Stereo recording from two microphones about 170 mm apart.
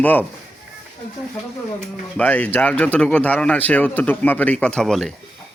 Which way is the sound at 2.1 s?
10° left (ahead or behind).